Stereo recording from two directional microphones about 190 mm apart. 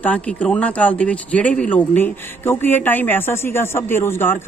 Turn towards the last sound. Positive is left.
turn(degrees=10)  # may be behind; listen again after turning